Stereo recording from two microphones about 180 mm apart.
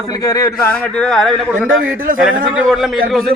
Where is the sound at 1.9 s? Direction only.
50° right (ahead or behind).